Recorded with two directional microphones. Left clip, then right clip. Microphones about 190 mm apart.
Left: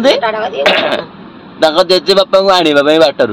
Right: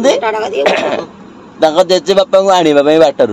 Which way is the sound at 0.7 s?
10° right (ahead or behind).